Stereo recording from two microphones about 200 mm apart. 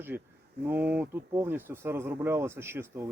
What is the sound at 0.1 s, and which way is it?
Speech, 10° right (ahead or behind).